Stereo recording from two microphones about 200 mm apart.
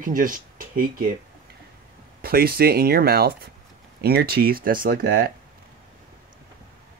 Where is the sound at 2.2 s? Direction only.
50° right (ahead or behind).